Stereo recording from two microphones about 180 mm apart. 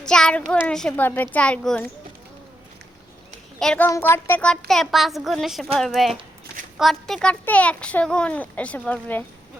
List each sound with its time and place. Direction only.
0.0 s a child's voice: 5° left (ahead or behind)
3.6 s a child's voice: 5° left (ahead or behind)
3.8 s a child's voice: 15° left (ahead or behind)